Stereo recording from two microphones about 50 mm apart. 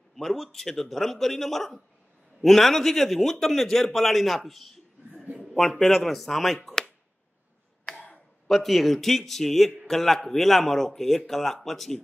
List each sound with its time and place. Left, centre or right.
0.1 s a man's voice: centre
7.9 s tick-tock: left
8.5 s a man's voice: centre